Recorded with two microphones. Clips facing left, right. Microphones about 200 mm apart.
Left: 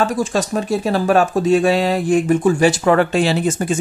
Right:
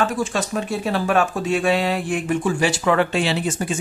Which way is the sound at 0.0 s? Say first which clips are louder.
Left 4 dB; 40° left (ahead or behind).